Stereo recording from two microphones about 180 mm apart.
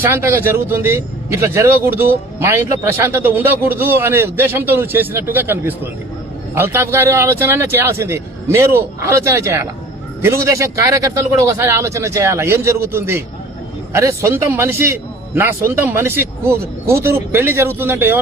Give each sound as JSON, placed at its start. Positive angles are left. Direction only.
{"t": 0.0, "sound": "speech", "side_deg": -15}